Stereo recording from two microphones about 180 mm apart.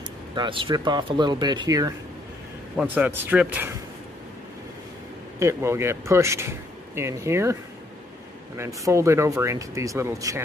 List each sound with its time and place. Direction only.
0.3 s speech: 25° right (ahead or behind)
2.7 s speech: 5° right (ahead or behind)
5.4 s speech: 15° right (ahead or behind)
8.5 s speech: 15° right (ahead or behind)